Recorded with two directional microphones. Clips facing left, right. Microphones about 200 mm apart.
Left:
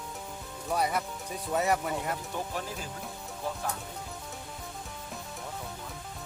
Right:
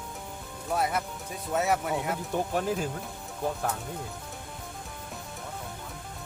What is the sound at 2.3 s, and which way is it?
Speech, 55° right (ahead or behind).